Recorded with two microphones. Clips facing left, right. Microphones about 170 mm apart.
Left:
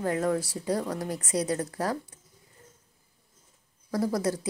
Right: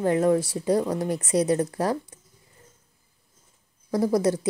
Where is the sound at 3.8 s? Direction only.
20° right (ahead or behind).